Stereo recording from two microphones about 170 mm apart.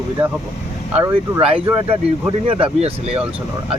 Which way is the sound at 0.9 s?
15° right (ahead or behind).